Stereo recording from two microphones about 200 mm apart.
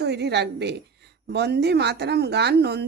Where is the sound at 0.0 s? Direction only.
55° right (ahead or behind).